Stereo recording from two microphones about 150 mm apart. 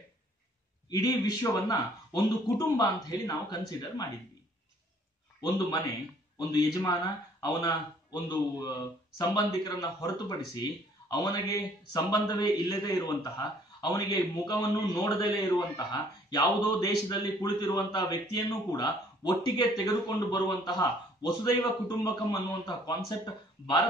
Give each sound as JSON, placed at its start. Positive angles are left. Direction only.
{"t": 0.8, "sound": "speech", "side_deg": 25}
{"t": 6.3, "sound": "speech", "side_deg": 25}